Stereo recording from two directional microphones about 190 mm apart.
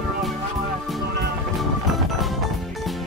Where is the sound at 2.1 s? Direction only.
Centre (ahead or behind).